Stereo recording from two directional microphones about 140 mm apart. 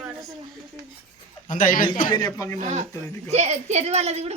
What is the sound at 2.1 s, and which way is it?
Child singing, 25° left (ahead or behind).